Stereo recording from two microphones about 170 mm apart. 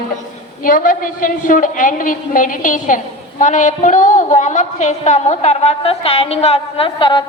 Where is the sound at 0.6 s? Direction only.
55° left (ahead or behind).